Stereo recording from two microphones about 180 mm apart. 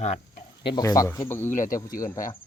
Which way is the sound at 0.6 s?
20° left (ahead or behind).